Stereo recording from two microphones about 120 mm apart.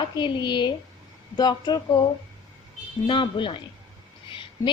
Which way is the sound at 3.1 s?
45° left (ahead or behind).